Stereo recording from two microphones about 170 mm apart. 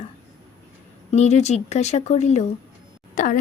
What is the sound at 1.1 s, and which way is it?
Speech, 40° left (ahead or behind).